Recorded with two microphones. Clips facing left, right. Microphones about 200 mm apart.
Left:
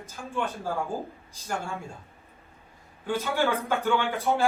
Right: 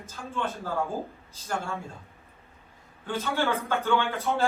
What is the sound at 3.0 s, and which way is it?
A man's voice, 15° left (ahead or behind).